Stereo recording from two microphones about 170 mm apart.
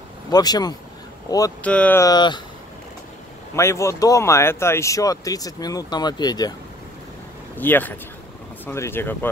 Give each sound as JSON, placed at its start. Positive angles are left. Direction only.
{"t": 0.3, "sound": "speech", "side_deg": 25}
{"t": 1.6, "sound": "speech", "side_deg": 10}
{"t": 2.0, "sound": "speech", "side_deg": 25}
{"t": 3.5, "sound": "speech", "side_deg": 15}
{"t": 7.5, "sound": "speech", "side_deg": 10}